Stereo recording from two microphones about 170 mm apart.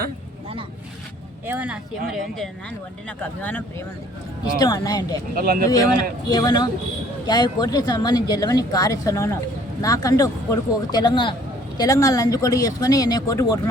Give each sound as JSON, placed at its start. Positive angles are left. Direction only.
{"t": 1.5, "sound": "speech", "side_deg": -10}
{"t": 3.2, "sound": "speech", "side_deg": 10}
{"t": 4.5, "sound": "speech", "side_deg": 20}
{"t": 5.3, "sound": "speech", "side_deg": -60}
{"t": 6.3, "sound": "speech", "side_deg": 25}